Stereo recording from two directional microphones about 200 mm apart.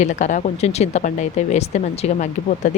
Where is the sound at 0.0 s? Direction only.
40° left (ahead or behind).